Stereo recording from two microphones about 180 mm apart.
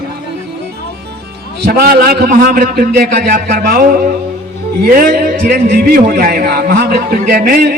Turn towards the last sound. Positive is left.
turn(degrees=-60)  # may be behind; listen again after turning